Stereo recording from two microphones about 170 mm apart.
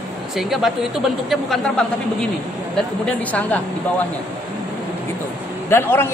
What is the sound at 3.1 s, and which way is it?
Speech, 10° left (ahead or behind).